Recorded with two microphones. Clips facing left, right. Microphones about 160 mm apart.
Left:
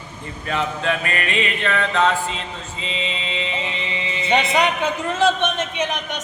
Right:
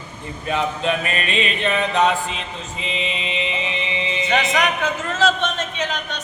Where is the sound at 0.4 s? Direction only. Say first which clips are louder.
Right 1 dB; 20° right (ahead or behind).